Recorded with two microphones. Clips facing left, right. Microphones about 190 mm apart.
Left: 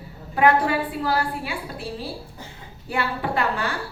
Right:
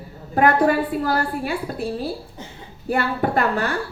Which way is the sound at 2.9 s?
45° right (ahead or behind).